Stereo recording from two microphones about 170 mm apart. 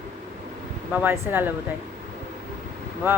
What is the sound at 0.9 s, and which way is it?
Speech, 10° right (ahead or behind).